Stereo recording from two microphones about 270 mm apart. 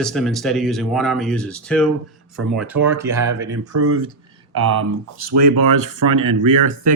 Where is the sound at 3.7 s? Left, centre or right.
Right.